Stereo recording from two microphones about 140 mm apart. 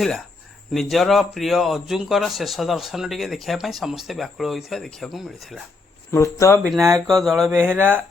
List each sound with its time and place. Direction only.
0.7 s a man's voice: centre (ahead or behind)
6.1 s speech: 20° left (ahead or behind)
6.7 s speech: 20° right (ahead or behind)
7.1 s a man's voice: centre (ahead or behind)
7.5 s speech: 15° right (ahead or behind)